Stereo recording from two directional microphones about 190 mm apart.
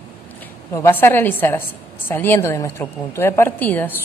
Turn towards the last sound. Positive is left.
turn(degrees=10)  # may be behind; listen again after turning